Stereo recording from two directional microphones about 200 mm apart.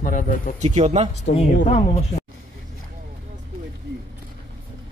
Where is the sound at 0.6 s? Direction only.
35° right (ahead or behind).